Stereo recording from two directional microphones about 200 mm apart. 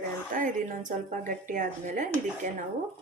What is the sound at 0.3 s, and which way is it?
A woman's voice, 40° right (ahead or behind).